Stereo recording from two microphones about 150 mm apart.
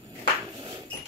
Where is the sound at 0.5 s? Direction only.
30° right (ahead or behind).